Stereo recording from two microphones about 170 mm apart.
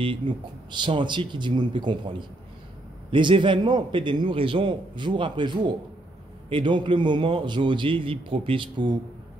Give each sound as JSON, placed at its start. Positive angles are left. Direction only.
{"t": 0.3, "sound": "a man's voice", "side_deg": -25}